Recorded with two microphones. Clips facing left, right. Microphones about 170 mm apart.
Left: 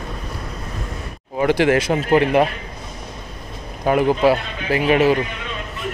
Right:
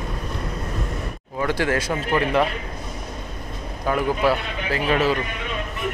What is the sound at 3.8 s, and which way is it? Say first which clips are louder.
Speech: left 5 dB; 20° left (ahead or behind).